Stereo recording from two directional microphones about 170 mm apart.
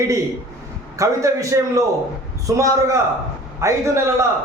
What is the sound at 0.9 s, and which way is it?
A man's voice, 20° right (ahead or behind).